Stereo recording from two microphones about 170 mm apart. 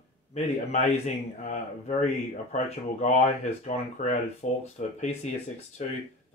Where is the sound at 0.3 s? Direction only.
40° left (ahead or behind).